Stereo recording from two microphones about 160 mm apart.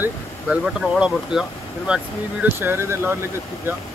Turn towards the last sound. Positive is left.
turn(degrees=-15)  # may be behind; listen again after turning